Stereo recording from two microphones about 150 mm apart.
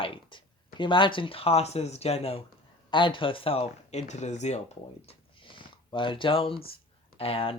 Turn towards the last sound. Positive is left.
turn(degrees=40)  # may be behind; listen again after turning